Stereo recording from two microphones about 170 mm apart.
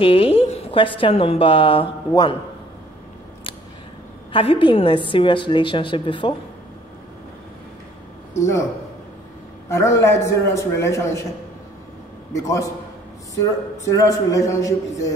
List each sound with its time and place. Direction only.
0.0 s a woman's voice: 35° left (ahead or behind)
4.3 s a woman's voice: 30° left (ahead or behind)
8.4 s a man's voice: 15° left (ahead or behind)
9.7 s a man's voice: 15° left (ahead or behind)
12.4 s a woman's voice: 20° left (ahead or behind)
13.9 s a woman's voice: 20° left (ahead or behind)